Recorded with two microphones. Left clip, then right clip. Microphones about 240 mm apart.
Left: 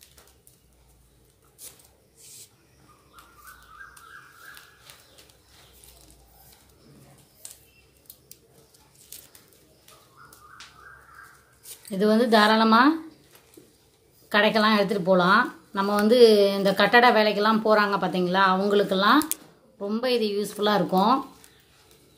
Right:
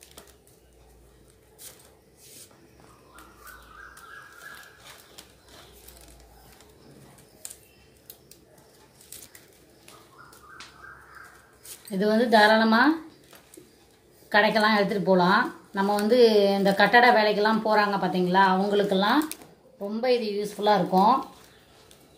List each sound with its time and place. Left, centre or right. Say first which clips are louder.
11.9 s speech: left 1 dB; left
14.3 s speech: even; left